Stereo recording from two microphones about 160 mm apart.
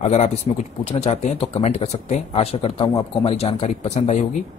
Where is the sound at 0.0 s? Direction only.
45° left (ahead or behind).